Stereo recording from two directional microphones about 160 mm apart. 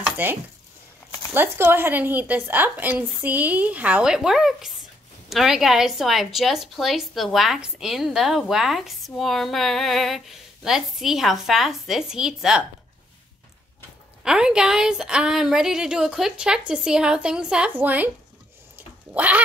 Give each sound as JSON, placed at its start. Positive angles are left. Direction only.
{"t": 0.2, "sound": "a woman's voice", "side_deg": -10}
{"t": 14.2, "sound": "a woman's voice", "side_deg": -5}
{"t": 18.8, "sound": "a sound", "side_deg": -10}